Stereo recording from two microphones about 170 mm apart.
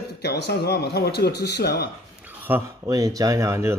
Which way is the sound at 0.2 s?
75° left (ahead or behind).